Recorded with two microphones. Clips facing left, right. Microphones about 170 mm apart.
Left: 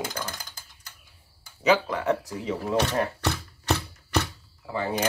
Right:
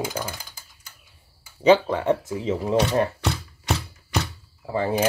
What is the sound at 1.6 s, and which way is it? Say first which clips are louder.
Speech: right 5 dB; 30° right (ahead or behind).